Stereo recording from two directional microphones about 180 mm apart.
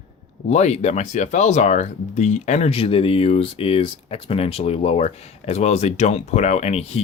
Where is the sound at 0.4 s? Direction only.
40° left (ahead or behind).